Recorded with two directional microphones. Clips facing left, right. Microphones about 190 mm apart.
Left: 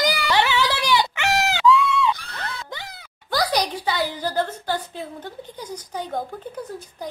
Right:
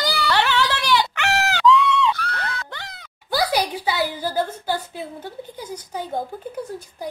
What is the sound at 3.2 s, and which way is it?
A woman's voice, 5° right (ahead or behind).